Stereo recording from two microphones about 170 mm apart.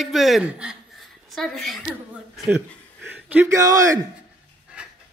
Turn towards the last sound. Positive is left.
turn(degrees=-5)  # may be behind; listen again after turning